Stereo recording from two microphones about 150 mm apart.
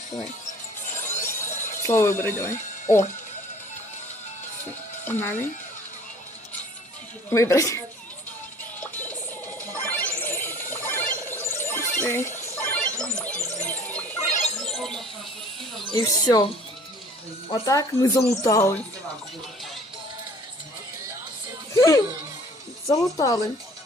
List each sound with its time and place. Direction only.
1.1 s music: 15° left (ahead or behind)
5.0 s speech: 15° left (ahead or behind)
7.3 s speech: 20° left (ahead or behind)
8.8 s music: 10° left (ahead or behind)
9.7 s a sound: 15° left (ahead or behind)
15.9 s speech: 25° left (ahead or behind)
17.5 s speech: 25° left (ahead or behind)
21.7 s music: 20° left (ahead or behind)
22.9 s speech: 25° left (ahead or behind)